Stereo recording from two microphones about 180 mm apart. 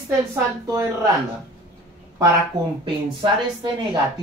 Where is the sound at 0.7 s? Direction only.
20° right (ahead or behind).